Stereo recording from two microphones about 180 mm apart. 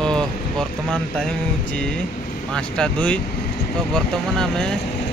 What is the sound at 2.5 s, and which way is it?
Speech, 5° left (ahead or behind).